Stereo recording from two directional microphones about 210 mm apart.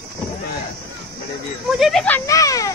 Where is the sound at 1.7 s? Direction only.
Centre (ahead or behind); by 2.7 s 15° left (ahead or behind).